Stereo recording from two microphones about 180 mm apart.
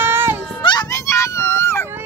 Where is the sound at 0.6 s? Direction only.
25° left (ahead or behind).